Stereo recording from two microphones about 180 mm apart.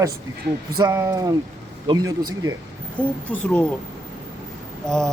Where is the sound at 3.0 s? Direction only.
5° left (ahead or behind).